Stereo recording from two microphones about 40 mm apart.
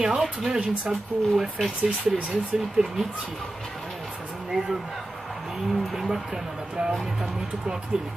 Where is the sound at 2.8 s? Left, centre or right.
Right.